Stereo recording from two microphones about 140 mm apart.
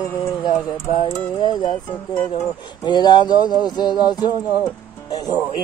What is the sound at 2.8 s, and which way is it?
Music, 30° left (ahead or behind).